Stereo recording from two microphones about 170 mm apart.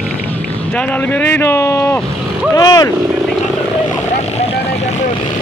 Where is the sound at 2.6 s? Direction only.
20° left (ahead or behind).